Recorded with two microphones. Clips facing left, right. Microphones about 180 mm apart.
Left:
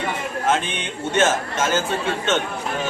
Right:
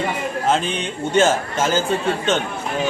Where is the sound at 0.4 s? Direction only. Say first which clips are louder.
Right 2 dB; 30° right (ahead or behind).